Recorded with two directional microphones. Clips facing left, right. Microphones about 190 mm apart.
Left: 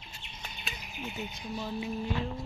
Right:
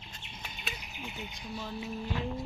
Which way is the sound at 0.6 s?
Centre (ahead or behind).